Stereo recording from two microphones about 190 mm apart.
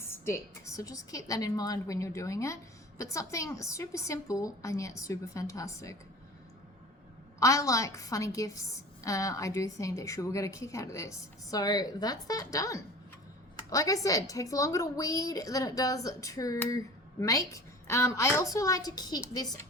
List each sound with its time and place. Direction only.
0.1 s a woman's voice: 15° left (ahead or behind)
7.3 s a woman's voice: 15° left (ahead or behind)